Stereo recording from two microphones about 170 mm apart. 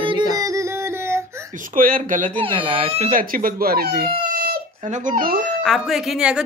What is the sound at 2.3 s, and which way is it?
Speech, 30° right (ahead or behind).